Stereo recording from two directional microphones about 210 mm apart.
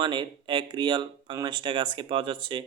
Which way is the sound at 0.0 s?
20° right (ahead or behind).